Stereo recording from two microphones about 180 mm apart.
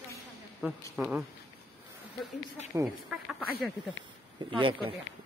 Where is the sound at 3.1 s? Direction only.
Centre (ahead or behind).